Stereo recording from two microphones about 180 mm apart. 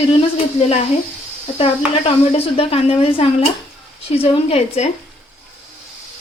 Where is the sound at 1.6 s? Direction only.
30° left (ahead or behind).